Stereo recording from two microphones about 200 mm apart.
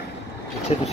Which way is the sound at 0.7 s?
30° left (ahead or behind).